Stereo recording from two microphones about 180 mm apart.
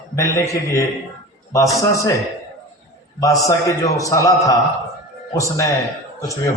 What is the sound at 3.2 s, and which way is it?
A man's voice, 20° left (ahead or behind).